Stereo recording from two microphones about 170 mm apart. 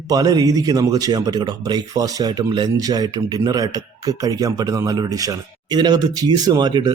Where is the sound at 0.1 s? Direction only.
20° right (ahead or behind).